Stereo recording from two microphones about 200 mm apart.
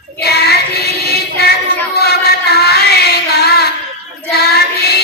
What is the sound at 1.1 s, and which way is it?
Music, 55° left (ahead or behind).